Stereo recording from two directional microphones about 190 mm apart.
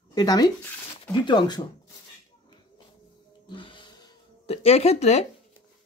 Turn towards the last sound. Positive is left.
turn(degrees=35)  # may be behind; listen again after turning